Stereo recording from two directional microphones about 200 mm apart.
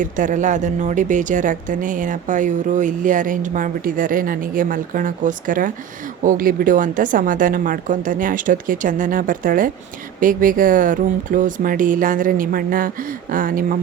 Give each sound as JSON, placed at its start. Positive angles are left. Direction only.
{"t": 0.0, "sound": "a woman's voice", "side_deg": -40}